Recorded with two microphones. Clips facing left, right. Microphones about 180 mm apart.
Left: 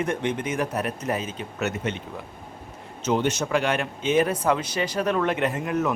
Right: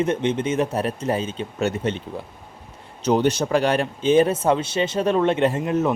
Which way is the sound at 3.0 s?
35° right (ahead or behind).